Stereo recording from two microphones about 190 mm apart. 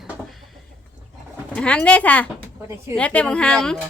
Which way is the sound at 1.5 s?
5° left (ahead or behind).